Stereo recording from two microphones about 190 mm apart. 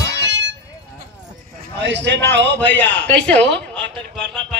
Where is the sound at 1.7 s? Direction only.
70° right (ahead or behind).